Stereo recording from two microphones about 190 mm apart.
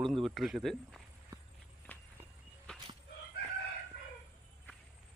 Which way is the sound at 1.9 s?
10° left (ahead or behind).